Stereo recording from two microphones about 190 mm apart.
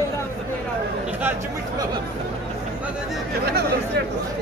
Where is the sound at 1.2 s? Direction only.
10° right (ahead or behind).